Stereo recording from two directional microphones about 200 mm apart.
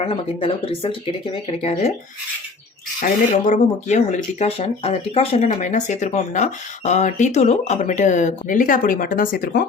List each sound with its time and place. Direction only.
0.0 s speech: 30° left (ahead or behind)
3.0 s speech: 40° left (ahead or behind)